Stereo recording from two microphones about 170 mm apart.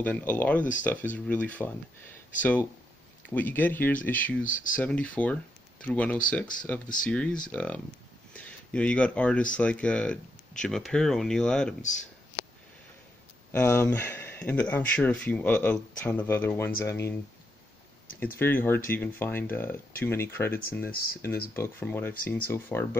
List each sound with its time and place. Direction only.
0.0 s speech: 10° left (ahead or behind)
4.4 s speech: 50° left (ahead or behind)
4.8 s speech: 10° left (ahead or behind)
13.5 s speech: 15° left (ahead or behind)
18.4 s speech: 10° left (ahead or behind)